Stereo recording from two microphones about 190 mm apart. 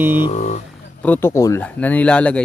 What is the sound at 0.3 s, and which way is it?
Speech, 35° left (ahead or behind).